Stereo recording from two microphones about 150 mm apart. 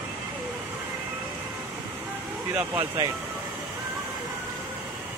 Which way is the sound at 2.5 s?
15° right (ahead or behind).